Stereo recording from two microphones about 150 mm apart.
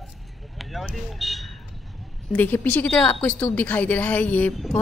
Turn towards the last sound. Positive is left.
turn(degrees=10)  # may be behind; listen again after turning